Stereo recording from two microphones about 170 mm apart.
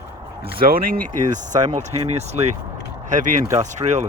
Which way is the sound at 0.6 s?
60° right (ahead or behind).